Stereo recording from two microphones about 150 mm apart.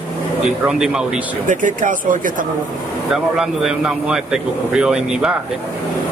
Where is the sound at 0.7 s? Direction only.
5° right (ahead or behind).